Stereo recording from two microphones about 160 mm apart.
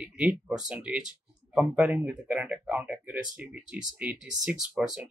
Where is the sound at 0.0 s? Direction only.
5° right (ahead or behind).